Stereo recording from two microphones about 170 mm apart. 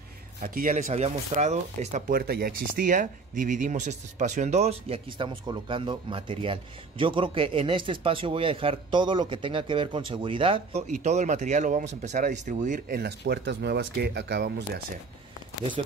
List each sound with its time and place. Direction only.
0.4 s speech: 45° right (ahead or behind)
2.1 s speech: 65° right (ahead or behind); by 10.8 s 30° right (ahead or behind)
10.9 s speech: 45° right (ahead or behind); by 14.8 s 75° right (ahead or behind)